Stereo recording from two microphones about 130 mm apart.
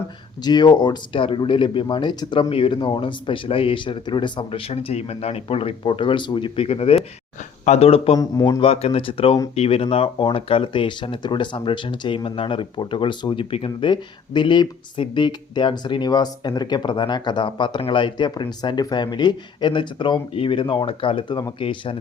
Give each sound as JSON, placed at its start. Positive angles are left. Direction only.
{"t": 0.4, "sound": "speech", "side_deg": 35}
{"t": 8.2, "sound": "a man's voice", "side_deg": 30}
{"t": 8.6, "sound": "speech", "side_deg": 50}